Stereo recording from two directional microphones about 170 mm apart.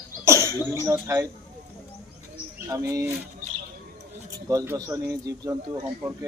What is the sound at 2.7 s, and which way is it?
Speech, 20° right (ahead or behind).